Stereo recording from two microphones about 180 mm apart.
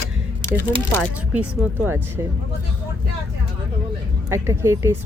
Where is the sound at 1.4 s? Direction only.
10° right (ahead or behind).